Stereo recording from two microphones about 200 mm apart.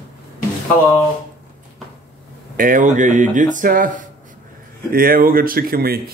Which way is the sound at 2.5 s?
40° right (ahead or behind).